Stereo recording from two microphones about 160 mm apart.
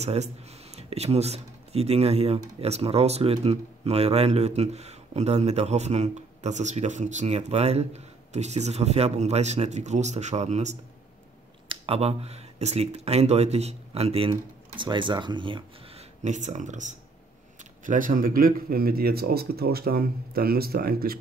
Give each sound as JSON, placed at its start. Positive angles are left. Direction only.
{"t": 0.0, "sound": "speech", "side_deg": -45}